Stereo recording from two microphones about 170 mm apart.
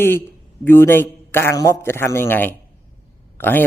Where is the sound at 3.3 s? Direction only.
10° left (ahead or behind).